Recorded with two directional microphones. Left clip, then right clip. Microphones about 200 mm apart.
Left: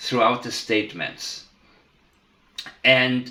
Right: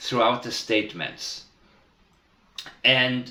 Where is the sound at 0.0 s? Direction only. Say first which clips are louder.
Left 2 dB; 40° left (ahead or behind).